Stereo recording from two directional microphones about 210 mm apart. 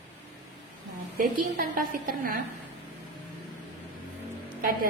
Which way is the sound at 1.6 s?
45° right (ahead or behind).